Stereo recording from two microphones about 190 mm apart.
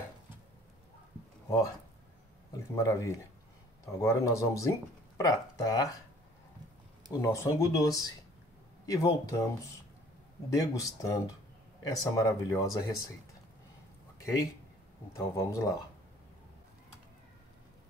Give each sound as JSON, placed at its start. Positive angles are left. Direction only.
{"t": 2.7, "sound": "speech", "side_deg": 15}
{"t": 7.1, "sound": "speech", "side_deg": 15}
{"t": 15.1, "sound": "speech", "side_deg": 15}